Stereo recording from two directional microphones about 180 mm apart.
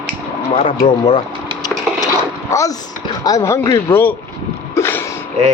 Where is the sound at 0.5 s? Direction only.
25° left (ahead or behind).